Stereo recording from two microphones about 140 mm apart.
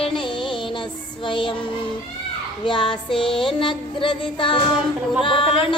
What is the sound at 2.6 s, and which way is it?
Child singing, 35° left (ahead or behind).